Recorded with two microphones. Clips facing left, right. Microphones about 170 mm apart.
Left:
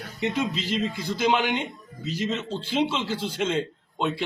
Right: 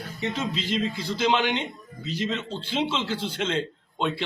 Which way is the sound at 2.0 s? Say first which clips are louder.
Left 1 dB; 45° left (ahead or behind).